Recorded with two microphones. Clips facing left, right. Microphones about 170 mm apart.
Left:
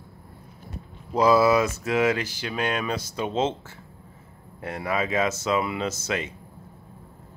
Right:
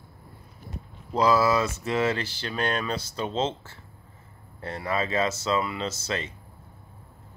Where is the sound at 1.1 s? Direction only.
10° left (ahead or behind).